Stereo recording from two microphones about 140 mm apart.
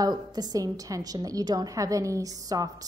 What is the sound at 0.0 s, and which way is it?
A woman's voice, 30° right (ahead or behind).